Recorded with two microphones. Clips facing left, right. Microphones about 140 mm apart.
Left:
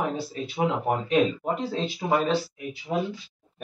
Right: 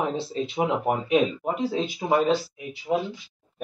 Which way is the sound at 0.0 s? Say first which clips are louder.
Right 2 dB; 25° right (ahead or behind).